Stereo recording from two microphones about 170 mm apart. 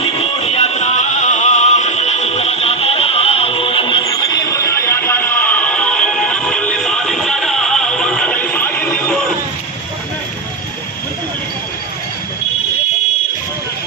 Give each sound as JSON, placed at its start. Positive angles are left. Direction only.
{"t": 0.0, "sound": "music", "side_deg": 35}